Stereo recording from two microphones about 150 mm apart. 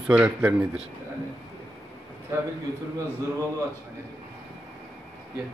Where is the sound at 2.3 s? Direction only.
20° right (ahead or behind).